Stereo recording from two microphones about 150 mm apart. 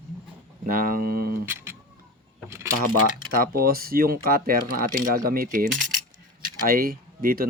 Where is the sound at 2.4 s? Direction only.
20° right (ahead or behind).